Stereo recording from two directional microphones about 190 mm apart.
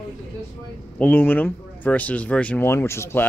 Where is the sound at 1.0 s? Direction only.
10° left (ahead or behind).